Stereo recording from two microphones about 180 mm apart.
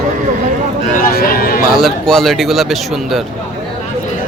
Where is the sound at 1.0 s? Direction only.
55° left (ahead or behind).